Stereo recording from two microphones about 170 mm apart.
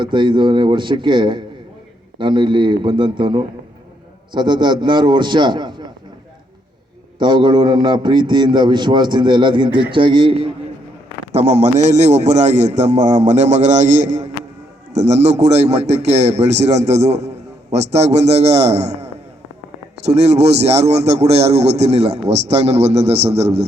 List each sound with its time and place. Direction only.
0.0 s a man's voice: 30° right (ahead or behind)
7.2 s a man's voice: 25° right (ahead or behind)
11.3 s a man's voice: 40° right (ahead or behind)
20.1 s a man's voice: 40° right (ahead or behind)